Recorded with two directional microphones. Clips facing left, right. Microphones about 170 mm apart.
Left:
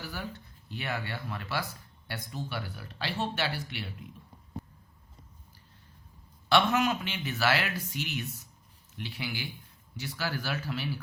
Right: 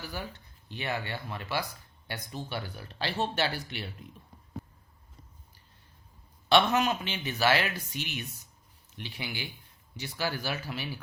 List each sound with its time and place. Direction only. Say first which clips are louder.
0.7 s speech: right 1 dB; 20° right (ahead or behind)
6.5 s speech: right 1 dB; 20° right (ahead or behind)